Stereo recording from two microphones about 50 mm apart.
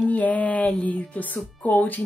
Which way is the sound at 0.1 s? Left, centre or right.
Left.